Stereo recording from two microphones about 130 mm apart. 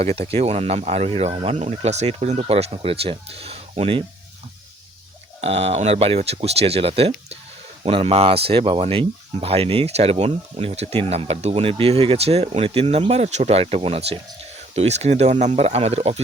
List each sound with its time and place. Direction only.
0.0 s speech: 50° right (ahead or behind)
5.4 s speech: 55° right (ahead or behind)